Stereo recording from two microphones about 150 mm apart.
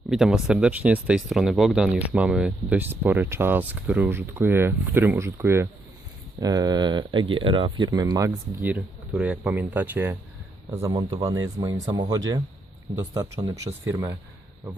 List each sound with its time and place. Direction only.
0.1 s speech: 5° right (ahead or behind); by 8.3 s 25° right (ahead or behind)
8.6 s speech: 10° right (ahead or behind)
10.7 s speech: 20° right (ahead or behind)